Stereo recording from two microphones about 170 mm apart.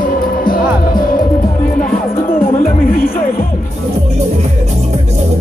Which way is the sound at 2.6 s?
55° left (ahead or behind).